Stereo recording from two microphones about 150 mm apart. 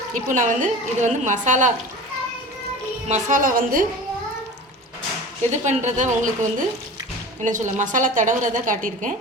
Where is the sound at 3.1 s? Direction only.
60° right (ahead or behind).